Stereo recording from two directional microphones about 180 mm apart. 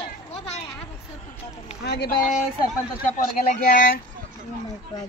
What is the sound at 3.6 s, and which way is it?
Speech, 50° left (ahead or behind).